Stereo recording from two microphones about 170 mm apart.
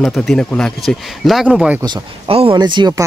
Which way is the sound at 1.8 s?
30° right (ahead or behind).